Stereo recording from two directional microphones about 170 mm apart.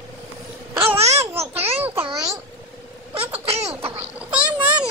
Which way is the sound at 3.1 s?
35° right (ahead or behind).